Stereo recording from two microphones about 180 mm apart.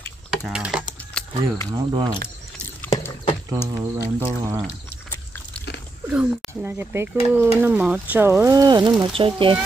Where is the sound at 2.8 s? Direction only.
15° left (ahead or behind).